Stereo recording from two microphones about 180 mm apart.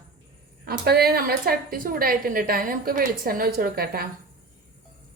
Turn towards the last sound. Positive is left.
turn(degrees=-60)  # may be behind; listen again after turning